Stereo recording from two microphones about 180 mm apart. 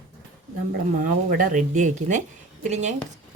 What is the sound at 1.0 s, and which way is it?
Speech, 45° right (ahead or behind).